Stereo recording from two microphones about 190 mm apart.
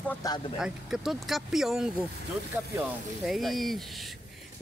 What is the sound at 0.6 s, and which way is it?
Speech, 5° right (ahead or behind).